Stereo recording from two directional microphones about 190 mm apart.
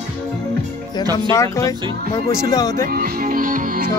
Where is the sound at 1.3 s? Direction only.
15° left (ahead or behind).